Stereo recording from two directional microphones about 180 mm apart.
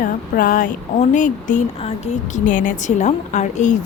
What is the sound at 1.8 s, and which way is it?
A woman's voice, 35° left (ahead or behind).